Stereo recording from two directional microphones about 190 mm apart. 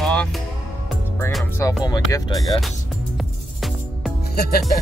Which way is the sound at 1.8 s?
20° left (ahead or behind).